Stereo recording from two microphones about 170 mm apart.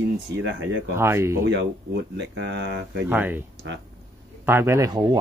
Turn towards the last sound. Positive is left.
turn(degrees=-25)  # may be behind; listen again after turning